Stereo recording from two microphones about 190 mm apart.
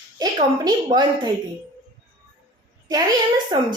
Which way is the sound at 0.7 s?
25° right (ahead or behind).